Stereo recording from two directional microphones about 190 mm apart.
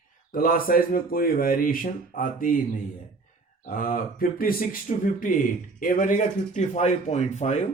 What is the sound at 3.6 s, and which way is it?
Speech, 45° left (ahead or behind).